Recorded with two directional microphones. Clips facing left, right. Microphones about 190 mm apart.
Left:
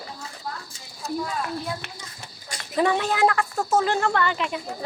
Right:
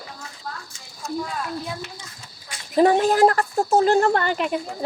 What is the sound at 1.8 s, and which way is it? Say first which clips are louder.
Speech: right 1 dB; 65° left (ahead or behind).